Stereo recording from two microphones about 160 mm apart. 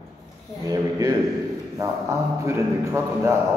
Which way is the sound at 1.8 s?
20° right (ahead or behind).